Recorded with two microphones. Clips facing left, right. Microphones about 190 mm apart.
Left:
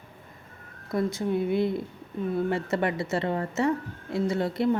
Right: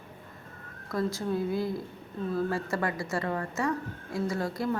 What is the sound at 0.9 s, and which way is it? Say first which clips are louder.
A woman's voice: left 3 dB; 20° left (ahead or behind).